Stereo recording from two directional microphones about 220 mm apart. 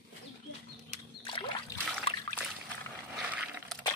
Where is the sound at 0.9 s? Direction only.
25° left (ahead or behind).